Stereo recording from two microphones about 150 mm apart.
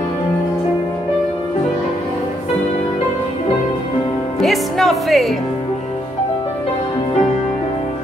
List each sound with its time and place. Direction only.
4.4 s music: centre (ahead or behind)